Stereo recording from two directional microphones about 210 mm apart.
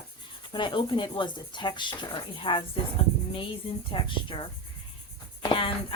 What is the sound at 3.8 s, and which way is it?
Speech, 25° left (ahead or behind).